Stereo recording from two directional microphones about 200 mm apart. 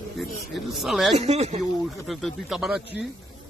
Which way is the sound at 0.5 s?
Centre (ahead or behind).